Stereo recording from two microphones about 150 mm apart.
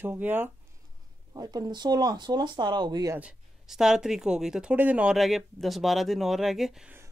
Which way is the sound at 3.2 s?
5° right (ahead or behind).